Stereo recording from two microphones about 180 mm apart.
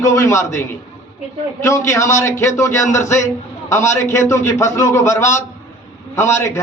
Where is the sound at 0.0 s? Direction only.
15° left (ahead or behind).